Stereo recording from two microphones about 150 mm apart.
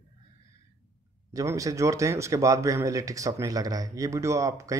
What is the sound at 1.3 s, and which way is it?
Speech, 20° right (ahead or behind).